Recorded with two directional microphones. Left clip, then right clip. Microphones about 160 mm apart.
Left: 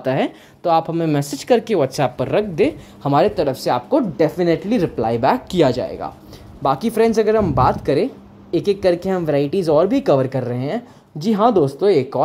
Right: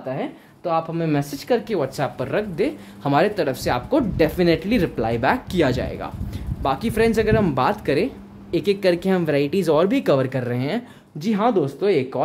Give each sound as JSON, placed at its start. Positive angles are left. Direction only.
{"t": 0.7, "sound": "speech", "side_deg": 25}
{"t": 3.0, "sound": "speech", "side_deg": 15}
{"t": 11.1, "sound": "speech", "side_deg": 20}